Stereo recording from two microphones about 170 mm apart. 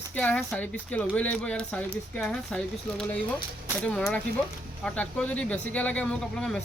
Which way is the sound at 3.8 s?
5° left (ahead or behind).